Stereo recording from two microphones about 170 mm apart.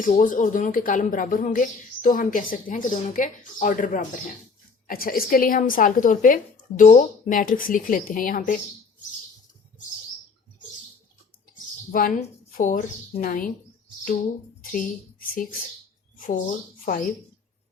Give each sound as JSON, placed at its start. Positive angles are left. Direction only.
{"t": 0.0, "sound": "speech", "side_deg": 50}
{"t": 11.9, "sound": "a woman's voice", "side_deg": 55}
{"t": 14.6, "sound": "a sound", "side_deg": 50}
{"t": 16.1, "sound": "speech", "side_deg": 50}